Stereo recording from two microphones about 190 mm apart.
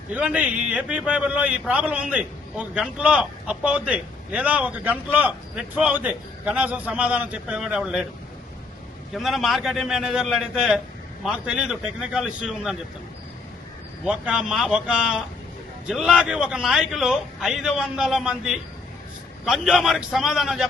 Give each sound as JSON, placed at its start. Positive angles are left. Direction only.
{"t": 0.1, "sound": "a man's voice", "side_deg": -5}
{"t": 9.1, "sound": "a man's voice", "side_deg": 0}
{"t": 14.0, "sound": "a man's voice", "side_deg": -5}